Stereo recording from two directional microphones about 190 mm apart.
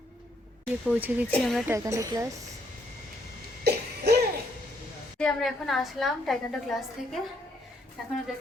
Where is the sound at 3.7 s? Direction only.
60° right (ahead or behind).